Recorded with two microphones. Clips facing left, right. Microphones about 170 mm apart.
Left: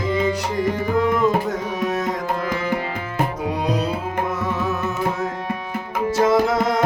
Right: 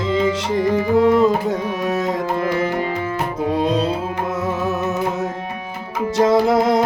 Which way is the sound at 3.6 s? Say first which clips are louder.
Right 1 dB; 25° right (ahead or behind).